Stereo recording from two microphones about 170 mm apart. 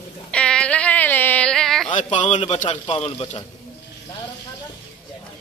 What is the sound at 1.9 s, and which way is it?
Speech, 45° left (ahead or behind).